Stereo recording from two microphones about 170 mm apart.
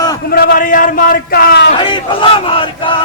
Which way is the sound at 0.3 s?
60° left (ahead or behind).